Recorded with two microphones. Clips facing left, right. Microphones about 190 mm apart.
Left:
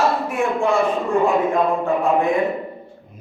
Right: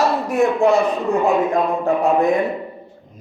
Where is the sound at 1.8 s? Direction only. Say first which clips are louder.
Right 2 dB; 40° right (ahead or behind).